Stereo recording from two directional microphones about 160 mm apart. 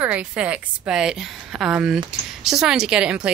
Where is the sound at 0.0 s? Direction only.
10° right (ahead or behind).